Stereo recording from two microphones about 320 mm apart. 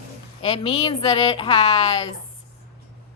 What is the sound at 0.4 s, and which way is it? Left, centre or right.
A woman's voice, centre.